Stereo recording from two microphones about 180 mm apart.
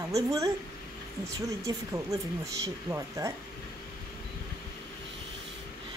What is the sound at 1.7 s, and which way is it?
Speech, 20° right (ahead or behind).